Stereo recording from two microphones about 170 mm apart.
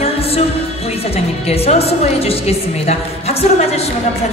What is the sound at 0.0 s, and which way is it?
Music, 35° left (ahead or behind).